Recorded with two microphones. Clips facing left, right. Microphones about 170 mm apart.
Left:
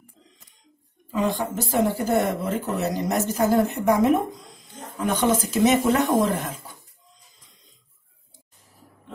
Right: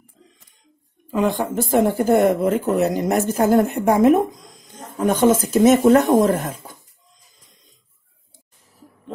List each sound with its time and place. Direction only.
1.1 s speech: 55° right (ahead or behind)